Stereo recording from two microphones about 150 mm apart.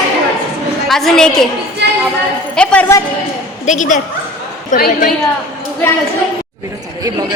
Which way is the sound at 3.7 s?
55° left (ahead or behind).